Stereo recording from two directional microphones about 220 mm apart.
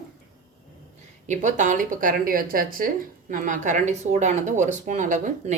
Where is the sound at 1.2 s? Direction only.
35° right (ahead or behind).